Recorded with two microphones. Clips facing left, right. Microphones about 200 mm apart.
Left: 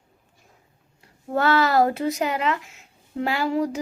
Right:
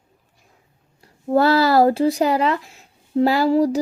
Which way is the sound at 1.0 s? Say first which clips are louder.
Right 6 dB; 35° right (ahead or behind).